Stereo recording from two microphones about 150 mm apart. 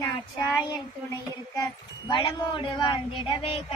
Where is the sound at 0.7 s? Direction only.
25° left (ahead or behind).